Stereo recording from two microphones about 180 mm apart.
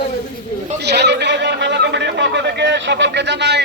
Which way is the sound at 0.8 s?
70° right (ahead or behind).